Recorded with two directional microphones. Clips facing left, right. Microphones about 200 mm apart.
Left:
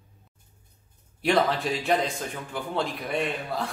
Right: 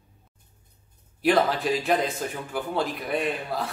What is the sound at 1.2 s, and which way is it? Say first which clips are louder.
Speech: right 2 dB; centre (ahead or behind).